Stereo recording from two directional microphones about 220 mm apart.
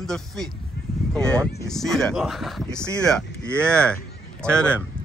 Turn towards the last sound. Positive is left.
turn(degrees=5)  # may be behind; listen again after turning